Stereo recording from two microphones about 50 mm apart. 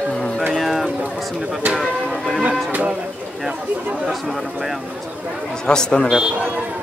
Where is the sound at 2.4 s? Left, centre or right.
Right.